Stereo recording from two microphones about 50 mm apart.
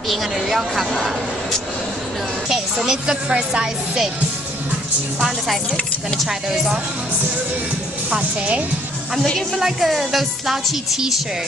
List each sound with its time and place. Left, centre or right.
0.1 s speech: centre
2.5 s a woman's voice: centre
6.2 s a woman's voice: centre
8.1 s a woman's voice: right
9.6 s speech: centre